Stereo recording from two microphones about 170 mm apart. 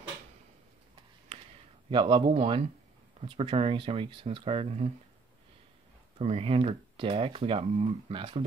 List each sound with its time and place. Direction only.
1.9 s speech: 30° right (ahead or behind)
6.1 s speech: 35° right (ahead or behind)